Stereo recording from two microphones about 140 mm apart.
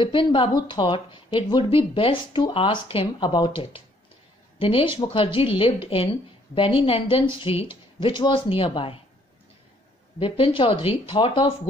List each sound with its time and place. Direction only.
0.0 s speech: 35° left (ahead or behind)
10.1 s speech: 40° left (ahead or behind)